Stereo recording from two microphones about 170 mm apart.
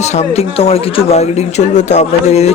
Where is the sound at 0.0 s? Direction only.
40° left (ahead or behind).